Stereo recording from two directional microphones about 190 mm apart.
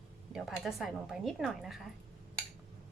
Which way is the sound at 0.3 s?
Centre (ahead or behind).